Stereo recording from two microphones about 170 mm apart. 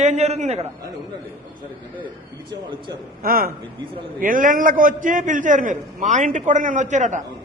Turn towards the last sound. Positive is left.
turn(degrees=-45)  # may be behind; listen again after turning